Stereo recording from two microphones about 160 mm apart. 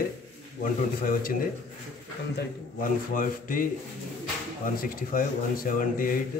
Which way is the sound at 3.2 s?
60° left (ahead or behind).